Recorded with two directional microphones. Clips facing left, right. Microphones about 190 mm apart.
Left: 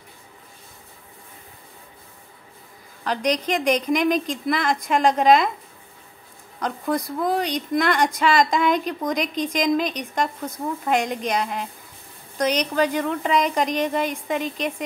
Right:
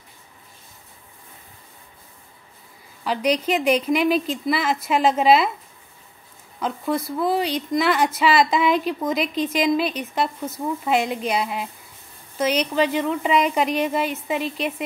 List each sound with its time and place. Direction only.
3.0 s a woman's voice: 5° right (ahead or behind)
6.6 s a woman's voice: centre (ahead or behind)
12.7 s speech: 45° left (ahead or behind)
13.0 s a woman's voice: 5° right (ahead or behind)